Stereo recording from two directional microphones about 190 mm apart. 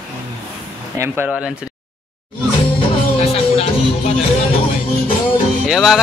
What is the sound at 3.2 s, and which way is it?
Music, 30° left (ahead or behind).